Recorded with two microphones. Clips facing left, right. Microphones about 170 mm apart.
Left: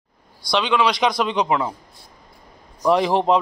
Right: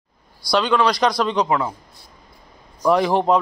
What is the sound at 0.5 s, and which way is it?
Speech, centre (ahead or behind).